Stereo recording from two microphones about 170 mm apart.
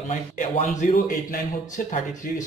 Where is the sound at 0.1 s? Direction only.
45° left (ahead or behind).